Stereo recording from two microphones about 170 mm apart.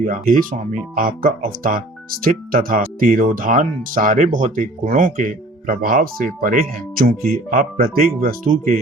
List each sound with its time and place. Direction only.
0.0 s speech: 55° right (ahead or behind)